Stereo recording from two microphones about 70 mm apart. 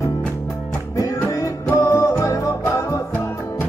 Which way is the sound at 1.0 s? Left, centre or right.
Left.